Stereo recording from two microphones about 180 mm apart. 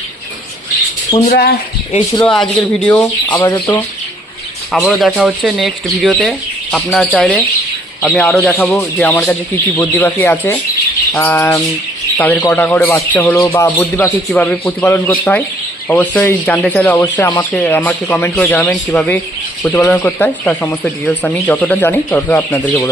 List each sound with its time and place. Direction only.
1.3 s speech: 60° left (ahead or behind)
2.2 s speech: 5° left (ahead or behind)
3.3 s speech: 25° left (ahead or behind)
4.7 s speech: centre (ahead or behind)
14.3 s speech: 5° left (ahead or behind)
14.6 s speech: 15° left (ahead or behind)